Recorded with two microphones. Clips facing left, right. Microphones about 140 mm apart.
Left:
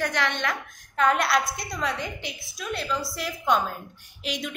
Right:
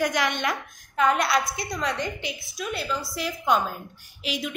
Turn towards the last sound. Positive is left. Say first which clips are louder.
# right 1 dB
turn(degrees=-5)  # may be behind; listen again after turning